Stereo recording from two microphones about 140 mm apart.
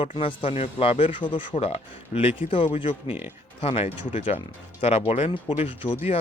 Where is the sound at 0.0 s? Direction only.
40° left (ahead or behind).